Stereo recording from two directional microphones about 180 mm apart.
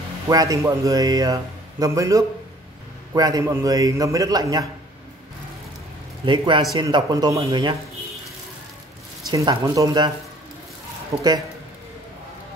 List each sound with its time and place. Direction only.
0.3 s a man's voice: 20° right (ahead or behind)
6.2 s a man's voice: 25° right (ahead or behind)
9.3 s a man's voice: 20° right (ahead or behind)